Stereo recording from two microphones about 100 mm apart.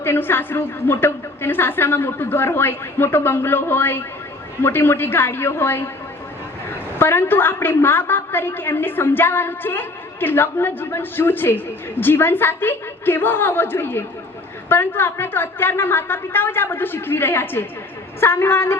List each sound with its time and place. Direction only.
0.0 s a woman's voice: 20° left (ahead or behind)